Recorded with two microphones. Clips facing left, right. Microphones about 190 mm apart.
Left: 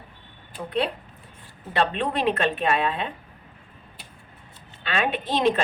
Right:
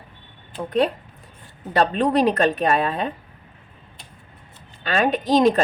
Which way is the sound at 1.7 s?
40° right (ahead or behind).